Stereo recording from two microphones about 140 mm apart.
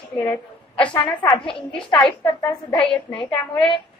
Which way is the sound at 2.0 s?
10° left (ahead or behind).